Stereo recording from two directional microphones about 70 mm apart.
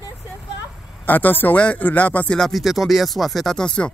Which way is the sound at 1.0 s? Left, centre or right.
Left.